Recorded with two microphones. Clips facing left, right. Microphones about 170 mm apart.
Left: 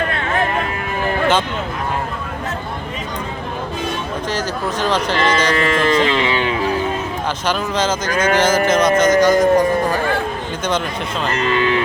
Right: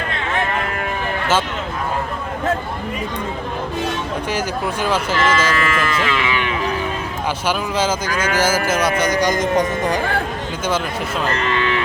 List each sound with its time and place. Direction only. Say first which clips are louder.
4.3 s a man's voice: left 1 dB; 10° right (ahead or behind)
5.5 s music: left 5 dB; 30° left (ahead or behind)
7.4 s a man's voice: left 1 dB; 10° right (ahead or behind)